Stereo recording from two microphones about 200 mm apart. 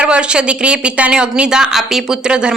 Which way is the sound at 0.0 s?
5° right (ahead or behind).